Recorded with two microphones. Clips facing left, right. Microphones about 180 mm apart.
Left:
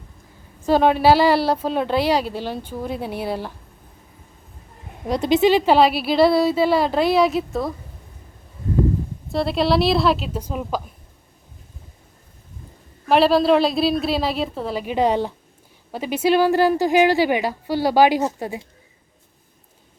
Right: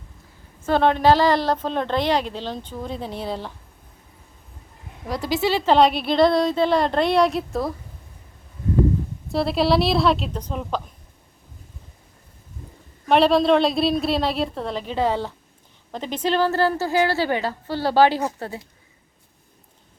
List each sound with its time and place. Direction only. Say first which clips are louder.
0.6 s a woman's voice: left 2 dB; 10° left (ahead or behind)
5.0 s a woman's voice: left 6 dB; 20° left (ahead or behind)
5.7 s a woman's voice: left 1 dB; 5° left (ahead or behind)
9.3 s a woman's voice: even; centre (ahead or behind)
13.1 s a woman's voice: left 1 dB; centre (ahead or behind)